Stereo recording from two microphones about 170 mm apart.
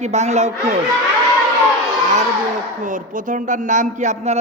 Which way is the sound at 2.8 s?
50° right (ahead or behind).